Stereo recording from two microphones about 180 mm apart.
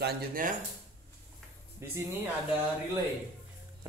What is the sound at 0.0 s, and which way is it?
Speech, 55° right (ahead or behind).